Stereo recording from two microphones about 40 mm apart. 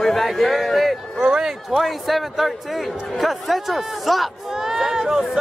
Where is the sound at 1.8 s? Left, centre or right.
Centre.